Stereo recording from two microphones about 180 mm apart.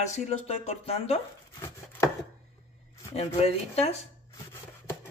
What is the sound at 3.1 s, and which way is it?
Speech, 35° left (ahead or behind).